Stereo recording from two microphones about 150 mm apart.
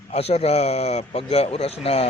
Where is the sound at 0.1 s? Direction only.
45° left (ahead or behind).